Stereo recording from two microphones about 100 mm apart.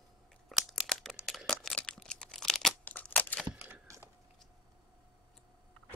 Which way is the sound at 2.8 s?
15° left (ahead or behind).